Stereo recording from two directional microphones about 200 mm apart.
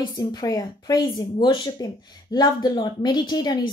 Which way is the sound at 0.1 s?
20° left (ahead or behind).